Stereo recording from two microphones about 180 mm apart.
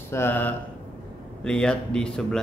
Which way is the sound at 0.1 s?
10° left (ahead or behind).